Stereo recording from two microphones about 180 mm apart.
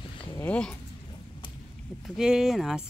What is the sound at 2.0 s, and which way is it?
Speech, 5° right (ahead or behind).